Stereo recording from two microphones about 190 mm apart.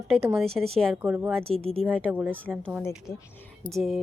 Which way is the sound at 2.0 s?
10° right (ahead or behind).